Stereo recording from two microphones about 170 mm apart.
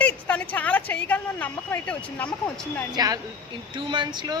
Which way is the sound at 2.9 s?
25° right (ahead or behind).